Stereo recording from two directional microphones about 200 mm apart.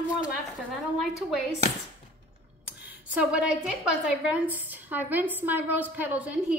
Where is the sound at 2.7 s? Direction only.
5° right (ahead or behind).